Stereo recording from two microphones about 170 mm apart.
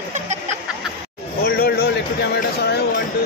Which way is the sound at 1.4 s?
60° left (ahead or behind).